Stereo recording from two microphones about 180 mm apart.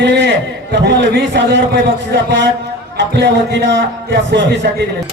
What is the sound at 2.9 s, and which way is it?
Speech, 70° right (ahead or behind).